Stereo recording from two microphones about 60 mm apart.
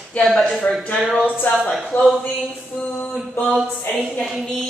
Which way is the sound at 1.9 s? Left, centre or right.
Left.